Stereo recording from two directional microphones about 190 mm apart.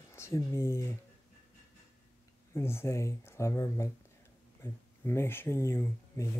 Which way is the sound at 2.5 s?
15° left (ahead or behind).